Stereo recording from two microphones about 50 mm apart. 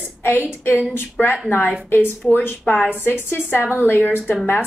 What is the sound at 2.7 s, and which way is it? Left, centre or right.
Speech, left.